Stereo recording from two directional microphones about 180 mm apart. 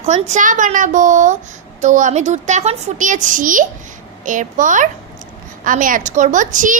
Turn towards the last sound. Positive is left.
turn(degrees=-45)  # may be behind; listen again after turning